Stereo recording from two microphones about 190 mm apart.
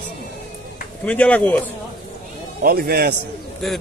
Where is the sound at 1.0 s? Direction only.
5° left (ahead or behind).